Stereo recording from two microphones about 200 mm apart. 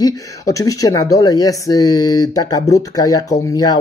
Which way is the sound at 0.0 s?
15° left (ahead or behind).